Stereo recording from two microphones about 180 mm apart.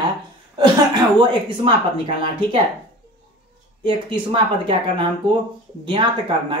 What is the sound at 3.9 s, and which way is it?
Speech, 25° right (ahead or behind).